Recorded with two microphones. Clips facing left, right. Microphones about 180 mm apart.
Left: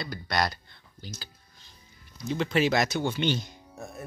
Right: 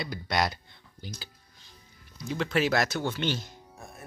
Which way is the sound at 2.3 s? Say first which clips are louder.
Left 1 dB; centre (ahead or behind).